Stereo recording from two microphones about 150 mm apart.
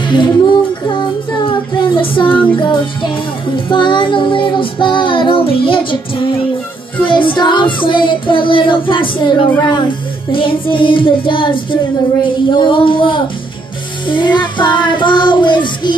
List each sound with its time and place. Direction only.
0.1 s child singing: 30° left (ahead or behind)
2.2 s child singing: 10° left (ahead or behind)
2.5 s music: 35° left (ahead or behind)
7.1 s music: 35° left (ahead or behind)